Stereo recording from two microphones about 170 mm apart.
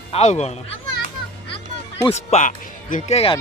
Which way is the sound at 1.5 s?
35° left (ahead or behind).